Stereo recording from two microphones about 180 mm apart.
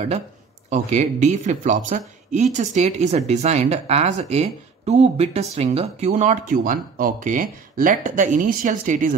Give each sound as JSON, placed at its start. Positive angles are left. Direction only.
{"t": 0.7, "sound": "speech", "side_deg": -40}